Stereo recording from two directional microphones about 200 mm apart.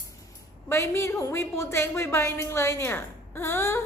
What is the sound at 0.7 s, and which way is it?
A woman's voice, 15° left (ahead or behind).